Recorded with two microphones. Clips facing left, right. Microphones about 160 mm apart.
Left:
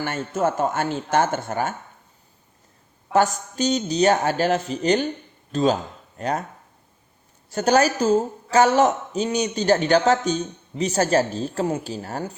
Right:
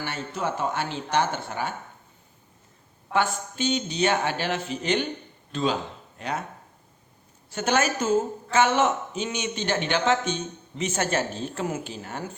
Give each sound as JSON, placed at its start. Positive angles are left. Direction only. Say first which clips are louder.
{"t": 0.0, "sound": "speech", "louder": "left 7 dB", "side_deg": 45}
{"t": 3.1, "sound": "a woman's voice", "louder": "left 5 dB", "side_deg": 40}
{"t": 5.5, "sound": "a sound", "louder": "left 6 dB", "side_deg": 40}
{"t": 7.5, "sound": "a woman's voice", "louder": "left 6 dB", "side_deg": 40}